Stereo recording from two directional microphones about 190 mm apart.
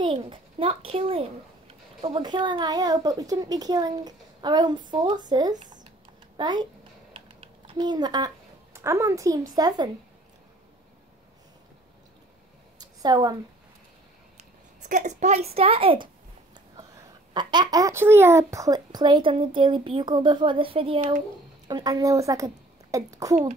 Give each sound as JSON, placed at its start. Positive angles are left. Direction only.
{"t": 0.0, "sound": "a child's voice", "side_deg": -30}
{"t": 7.2, "sound": "typing", "side_deg": -30}
{"t": 8.7, "sound": "a woman's voice", "side_deg": -15}
{"t": 12.7, "sound": "a sound", "side_deg": -20}
{"t": 14.8, "sound": "a woman's voice", "side_deg": -40}